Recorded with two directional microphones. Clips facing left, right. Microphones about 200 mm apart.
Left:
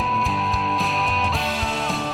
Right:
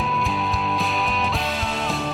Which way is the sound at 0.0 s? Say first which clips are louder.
Even; centre (ahead or behind).